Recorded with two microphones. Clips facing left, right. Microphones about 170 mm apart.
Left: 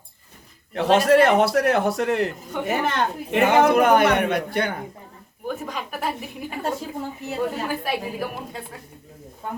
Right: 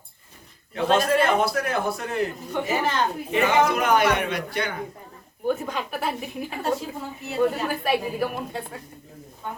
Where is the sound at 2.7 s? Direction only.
60° left (ahead or behind).